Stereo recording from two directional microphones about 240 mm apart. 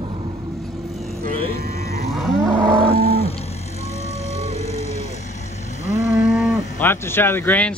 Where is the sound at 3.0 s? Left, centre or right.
Left.